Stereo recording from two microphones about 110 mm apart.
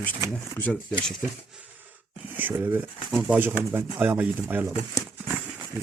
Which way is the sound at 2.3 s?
15° right (ahead or behind).